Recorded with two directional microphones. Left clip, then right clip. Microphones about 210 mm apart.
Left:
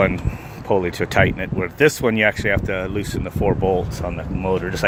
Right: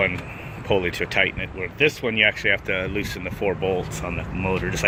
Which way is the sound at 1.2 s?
85° left.